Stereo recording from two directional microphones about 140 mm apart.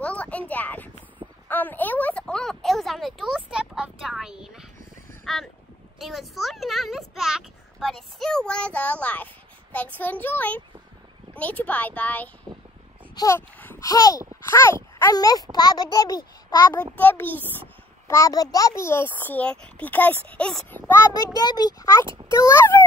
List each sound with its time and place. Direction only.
0.0 s a sound: 10° left (ahead or behind)
5.2 s a child's voice: centre (ahead or behind)
13.1 s speech: 25° left (ahead or behind)
13.6 s a sound: 15° left (ahead or behind)
13.8 s a child's voice: 25° left (ahead or behind)
16.9 s a child's voice: 15° left (ahead or behind)